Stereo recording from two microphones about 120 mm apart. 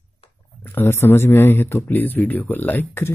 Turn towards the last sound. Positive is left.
turn(degrees=20)  # may be behind; listen again after turning